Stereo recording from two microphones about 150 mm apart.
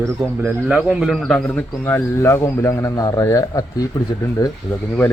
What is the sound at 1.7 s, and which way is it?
Speech, 20° left (ahead or behind).